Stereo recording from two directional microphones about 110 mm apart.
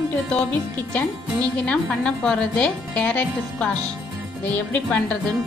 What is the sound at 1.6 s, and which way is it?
A woman's voice, 10° left (ahead or behind).